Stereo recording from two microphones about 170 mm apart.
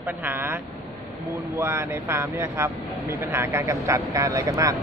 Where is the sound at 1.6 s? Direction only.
15° right (ahead or behind).